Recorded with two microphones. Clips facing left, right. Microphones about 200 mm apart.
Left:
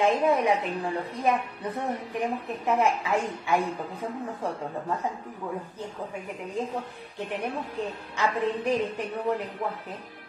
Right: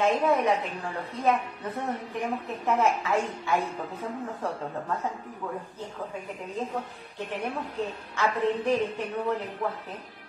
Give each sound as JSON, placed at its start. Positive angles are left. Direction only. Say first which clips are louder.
{"t": 0.0, "sound": "a woman's voice", "louder": "left 1 dB", "side_deg": 15}
{"t": 7.2, "sound": "a woman's voice", "louder": "left 1 dB", "side_deg": 15}